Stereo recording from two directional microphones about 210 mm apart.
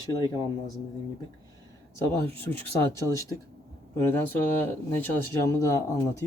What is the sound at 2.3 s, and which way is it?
Speech, 10° left (ahead or behind).